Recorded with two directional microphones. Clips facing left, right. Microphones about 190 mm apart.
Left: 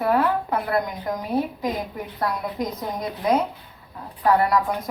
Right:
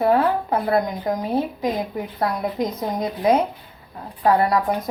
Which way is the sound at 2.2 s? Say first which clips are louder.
Right 3 dB; 25° right (ahead or behind).